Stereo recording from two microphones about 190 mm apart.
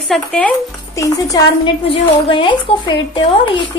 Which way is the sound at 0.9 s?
15° left (ahead or behind).